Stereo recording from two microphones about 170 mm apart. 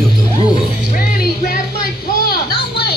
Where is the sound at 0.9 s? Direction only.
60° left (ahead or behind).